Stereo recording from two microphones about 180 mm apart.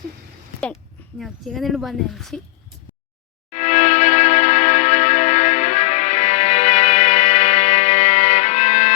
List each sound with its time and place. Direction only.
1.2 s speech: centre (ahead or behind)
3.5 s music: 40° left (ahead or behind)